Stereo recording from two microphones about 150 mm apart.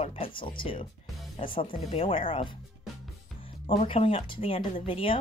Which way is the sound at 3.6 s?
35° left (ahead or behind).